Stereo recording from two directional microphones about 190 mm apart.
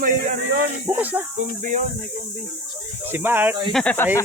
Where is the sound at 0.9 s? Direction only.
10° right (ahead or behind).